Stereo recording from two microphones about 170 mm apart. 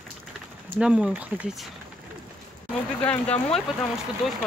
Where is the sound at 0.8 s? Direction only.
5° right (ahead or behind).